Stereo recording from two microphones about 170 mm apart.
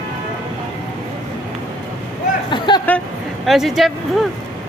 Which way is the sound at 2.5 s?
25° left (ahead or behind).